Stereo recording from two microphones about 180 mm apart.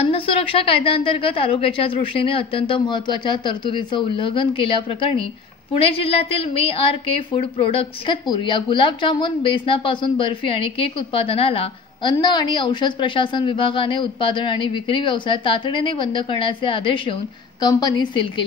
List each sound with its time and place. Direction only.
0.0 s a woman's voice: 30° left (ahead or behind)